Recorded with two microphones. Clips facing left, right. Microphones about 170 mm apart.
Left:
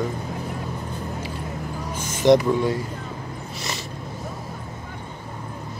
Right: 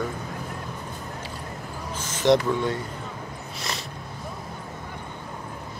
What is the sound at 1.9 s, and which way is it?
Speech, 10° left (ahead or behind).